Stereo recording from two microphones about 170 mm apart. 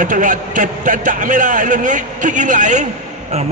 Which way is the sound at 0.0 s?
50° right (ahead or behind).